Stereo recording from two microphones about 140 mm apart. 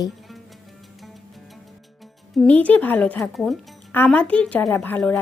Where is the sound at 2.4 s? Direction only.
10° left (ahead or behind).